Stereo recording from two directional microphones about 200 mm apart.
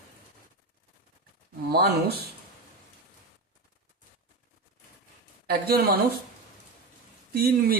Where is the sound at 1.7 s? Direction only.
50° right (ahead or behind).